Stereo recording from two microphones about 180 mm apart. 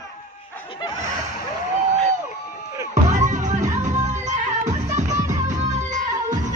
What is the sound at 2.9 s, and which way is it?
Music, 40° right (ahead or behind).